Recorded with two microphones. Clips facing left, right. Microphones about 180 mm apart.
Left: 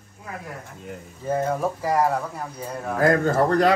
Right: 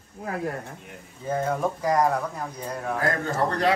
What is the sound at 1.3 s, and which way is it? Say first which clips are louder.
Speech: left 2 dB; 5° left (ahead or behind).